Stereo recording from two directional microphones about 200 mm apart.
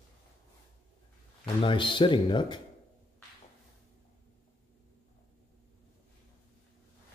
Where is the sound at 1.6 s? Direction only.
25° left (ahead or behind).